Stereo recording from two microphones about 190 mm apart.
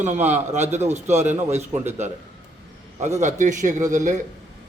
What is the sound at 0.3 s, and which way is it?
A man's voice, 35° right (ahead or behind).